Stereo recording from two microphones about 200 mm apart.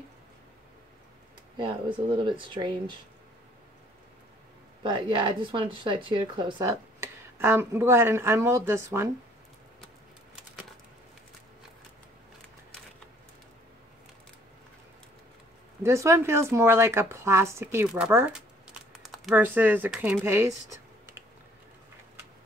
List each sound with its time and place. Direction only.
1.6 s speech: 25° right (ahead or behind)
4.8 s speech: 25° right (ahead or behind)
15.8 s a woman's voice: 15° right (ahead or behind)